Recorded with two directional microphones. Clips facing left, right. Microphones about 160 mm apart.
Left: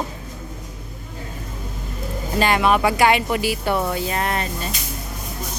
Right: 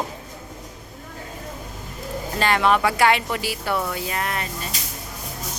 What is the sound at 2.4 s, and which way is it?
Speech, 15° left (ahead or behind).